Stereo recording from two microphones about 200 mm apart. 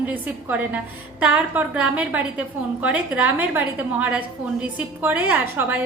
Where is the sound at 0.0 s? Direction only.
10° right (ahead or behind).